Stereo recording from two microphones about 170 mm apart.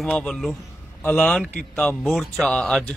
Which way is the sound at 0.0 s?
Centre (ahead or behind).